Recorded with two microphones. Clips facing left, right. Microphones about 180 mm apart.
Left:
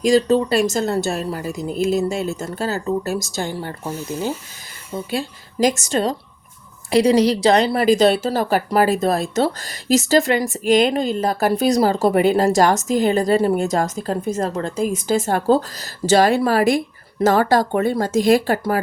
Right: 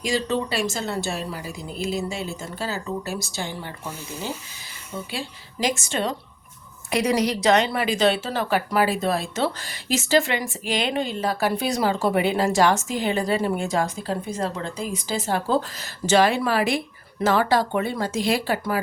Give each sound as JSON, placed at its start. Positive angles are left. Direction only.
{"t": 0.0, "sound": "a woman's voice", "side_deg": 40}